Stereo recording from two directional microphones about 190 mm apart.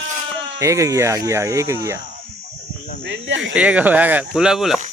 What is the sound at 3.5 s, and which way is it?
Speech, 5° right (ahead or behind).